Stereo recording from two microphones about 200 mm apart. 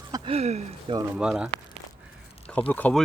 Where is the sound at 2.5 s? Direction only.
10° left (ahead or behind).